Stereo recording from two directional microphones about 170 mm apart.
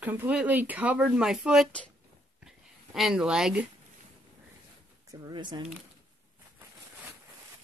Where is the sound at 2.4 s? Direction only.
Centre (ahead or behind).